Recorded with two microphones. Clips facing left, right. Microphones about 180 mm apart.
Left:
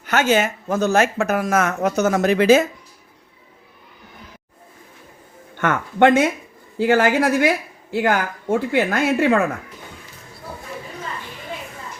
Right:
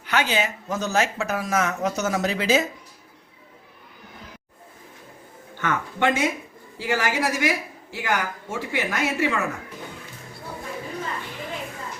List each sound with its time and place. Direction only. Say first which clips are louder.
0.0 s speech: left 6 dB; 45° left (ahead or behind)
5.5 s speech: left 8 dB; 55° left (ahead or behind)